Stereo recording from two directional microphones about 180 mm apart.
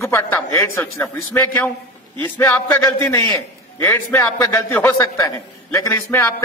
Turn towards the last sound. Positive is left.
turn(degrees=15)  # may be behind; listen again after turning